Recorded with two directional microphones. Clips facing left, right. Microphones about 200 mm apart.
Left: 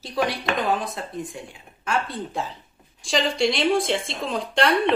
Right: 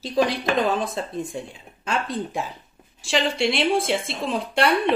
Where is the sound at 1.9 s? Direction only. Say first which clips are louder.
Right 1 dB; 20° right (ahead or behind).